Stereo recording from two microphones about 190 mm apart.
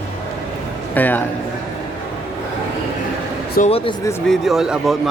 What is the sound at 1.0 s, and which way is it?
Speech, 10° left (ahead or behind).